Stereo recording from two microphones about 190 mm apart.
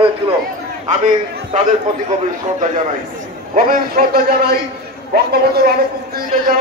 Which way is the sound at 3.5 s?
50° right (ahead or behind).